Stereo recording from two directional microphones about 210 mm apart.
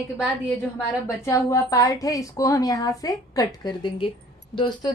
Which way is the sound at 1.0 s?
15° left (ahead or behind).